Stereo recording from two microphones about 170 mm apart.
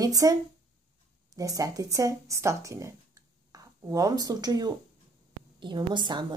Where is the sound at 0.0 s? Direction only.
20° right (ahead or behind).